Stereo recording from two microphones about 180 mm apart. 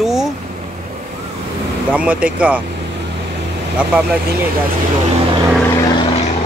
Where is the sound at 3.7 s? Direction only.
5° right (ahead or behind).